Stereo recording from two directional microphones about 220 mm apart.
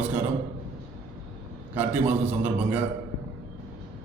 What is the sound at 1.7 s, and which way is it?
A man's voice, 10° right (ahead or behind).